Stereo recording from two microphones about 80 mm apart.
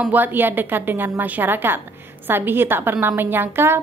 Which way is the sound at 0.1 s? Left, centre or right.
Right.